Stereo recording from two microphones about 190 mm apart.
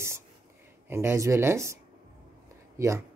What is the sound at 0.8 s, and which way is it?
Speech, 15° right (ahead or behind).